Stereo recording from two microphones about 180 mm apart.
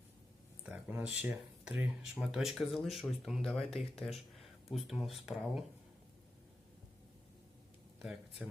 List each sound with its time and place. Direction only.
0.6 s speech: 10° right (ahead or behind)